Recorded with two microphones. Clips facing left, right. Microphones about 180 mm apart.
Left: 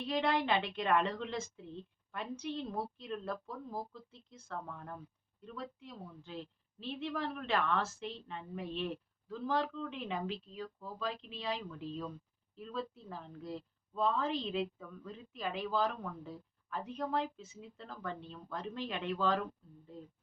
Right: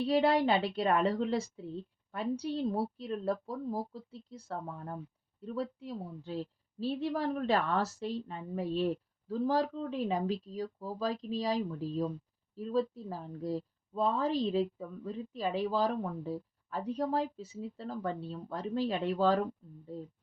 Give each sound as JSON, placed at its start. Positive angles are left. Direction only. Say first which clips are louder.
{"t": 0.0, "sound": "a woman's voice", "louder": "right 6 dB", "side_deg": -35}